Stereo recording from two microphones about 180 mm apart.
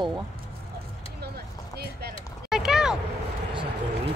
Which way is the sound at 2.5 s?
5° right (ahead or behind).